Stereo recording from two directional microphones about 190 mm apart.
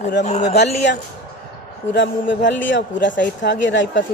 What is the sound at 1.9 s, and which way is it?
Speech, 70° left (ahead or behind).